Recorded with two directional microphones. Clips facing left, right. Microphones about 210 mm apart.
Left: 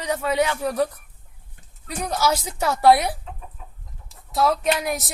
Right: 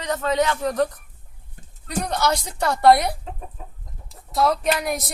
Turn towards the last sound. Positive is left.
turn(degrees=0)  # may be behind; listen again after turning